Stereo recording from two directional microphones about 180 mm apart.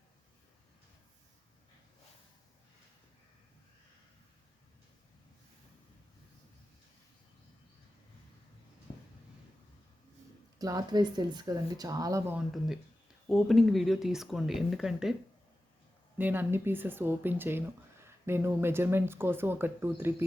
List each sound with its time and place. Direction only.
10.6 s speech: 20° right (ahead or behind)
12.4 s speech: centre (ahead or behind)
16.1 s speech: 10° right (ahead or behind)